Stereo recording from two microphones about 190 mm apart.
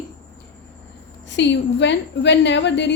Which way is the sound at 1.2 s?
70° left (ahead or behind).